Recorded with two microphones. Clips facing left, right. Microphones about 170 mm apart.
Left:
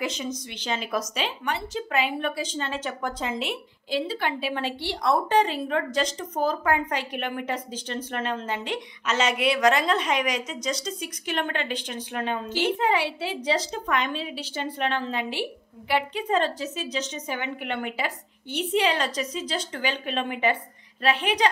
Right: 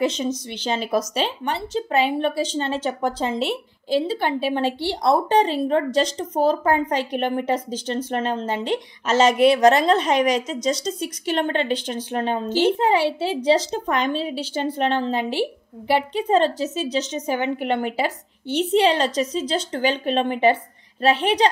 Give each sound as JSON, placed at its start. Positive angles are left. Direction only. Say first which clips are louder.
{"t": 0.7, "sound": "a woman's voice", "louder": "right 6 dB", "side_deg": -35}